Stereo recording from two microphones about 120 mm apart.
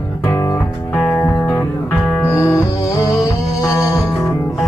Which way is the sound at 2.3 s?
25° left (ahead or behind).